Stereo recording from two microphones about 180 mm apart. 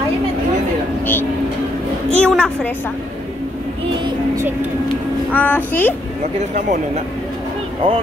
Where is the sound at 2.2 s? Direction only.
5° left (ahead or behind).